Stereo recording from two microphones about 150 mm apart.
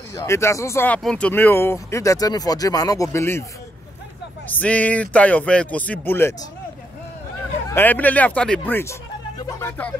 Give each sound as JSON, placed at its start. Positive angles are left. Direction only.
{"t": 0.1, "sound": "speech", "side_deg": 20}
{"t": 4.5, "sound": "speech", "side_deg": 10}
{"t": 7.7, "sound": "speech", "side_deg": 10}